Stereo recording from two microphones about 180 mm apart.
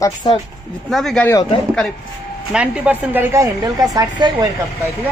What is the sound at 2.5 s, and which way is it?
A woman's voice, 5° right (ahead or behind).